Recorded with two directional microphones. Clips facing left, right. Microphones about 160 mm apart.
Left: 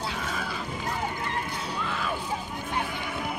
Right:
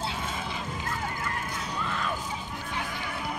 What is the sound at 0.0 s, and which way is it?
Music, 25° right (ahead or behind).